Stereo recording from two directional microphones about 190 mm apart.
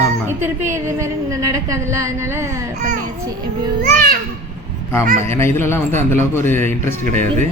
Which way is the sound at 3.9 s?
50° right (ahead or behind).